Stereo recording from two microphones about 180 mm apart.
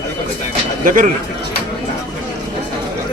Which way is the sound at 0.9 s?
50° right (ahead or behind).